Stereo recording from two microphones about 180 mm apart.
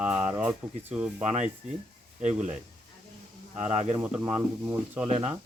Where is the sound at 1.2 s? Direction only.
40° right (ahead or behind).